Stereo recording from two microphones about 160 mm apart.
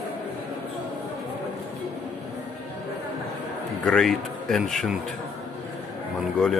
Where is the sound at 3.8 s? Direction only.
5° left (ahead or behind).